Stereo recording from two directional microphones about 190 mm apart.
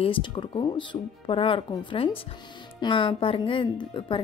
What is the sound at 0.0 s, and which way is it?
A woman's voice, 25° left (ahead or behind).